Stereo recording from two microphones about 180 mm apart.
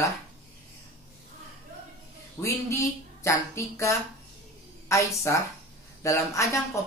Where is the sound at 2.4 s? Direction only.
15° left (ahead or behind).